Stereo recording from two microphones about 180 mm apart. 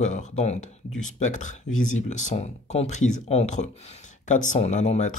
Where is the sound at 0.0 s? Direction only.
40° left (ahead or behind).